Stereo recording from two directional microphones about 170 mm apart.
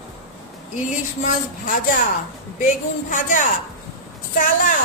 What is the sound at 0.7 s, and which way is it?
A woman's voice, 50° left (ahead or behind).